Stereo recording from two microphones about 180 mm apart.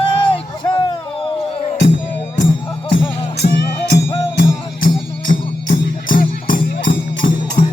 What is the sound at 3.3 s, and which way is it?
Music, 70° left (ahead or behind).